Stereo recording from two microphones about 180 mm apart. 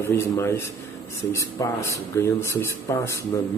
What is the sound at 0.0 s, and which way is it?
Speech, 15° left (ahead or behind).